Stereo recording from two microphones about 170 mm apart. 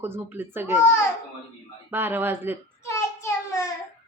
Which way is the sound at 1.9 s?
10° right (ahead or behind).